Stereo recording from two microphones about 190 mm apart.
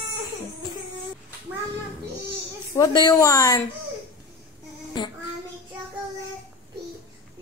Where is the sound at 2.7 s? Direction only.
20° left (ahead or behind).